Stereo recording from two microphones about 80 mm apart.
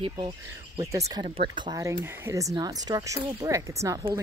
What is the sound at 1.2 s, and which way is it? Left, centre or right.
Speech, right.